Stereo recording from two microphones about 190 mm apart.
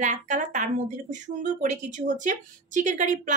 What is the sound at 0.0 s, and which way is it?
Speech, 40° right (ahead or behind).